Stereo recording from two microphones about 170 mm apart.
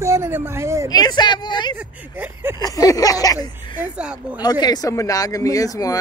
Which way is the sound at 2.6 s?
20° left (ahead or behind).